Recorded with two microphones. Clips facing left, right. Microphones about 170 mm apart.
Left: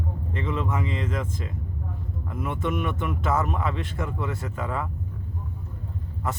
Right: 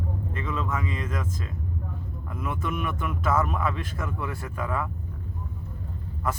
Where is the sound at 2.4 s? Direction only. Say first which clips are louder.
Left 3 dB; 25° left (ahead or behind).